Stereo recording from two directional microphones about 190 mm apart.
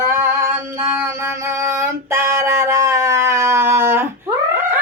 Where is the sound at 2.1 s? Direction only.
15° right (ahead or behind).